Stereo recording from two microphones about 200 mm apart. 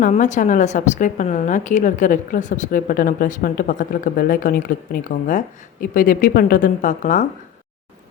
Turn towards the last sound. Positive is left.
turn(degrees=40)  # may be behind; listen again after turning